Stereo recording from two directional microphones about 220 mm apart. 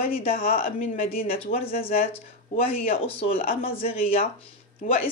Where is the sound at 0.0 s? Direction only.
25° left (ahead or behind).